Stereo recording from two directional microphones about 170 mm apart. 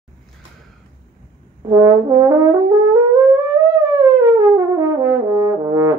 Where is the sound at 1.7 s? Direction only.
20° right (ahead or behind).